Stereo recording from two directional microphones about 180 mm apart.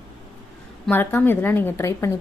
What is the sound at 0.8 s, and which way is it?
A woman's voice, 10° left (ahead or behind).